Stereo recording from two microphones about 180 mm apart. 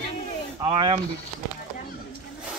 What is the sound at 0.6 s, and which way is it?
Speech, 30° right (ahead or behind).